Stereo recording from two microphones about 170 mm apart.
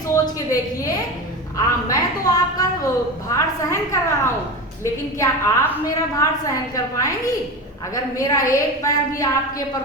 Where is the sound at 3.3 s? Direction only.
15° left (ahead or behind).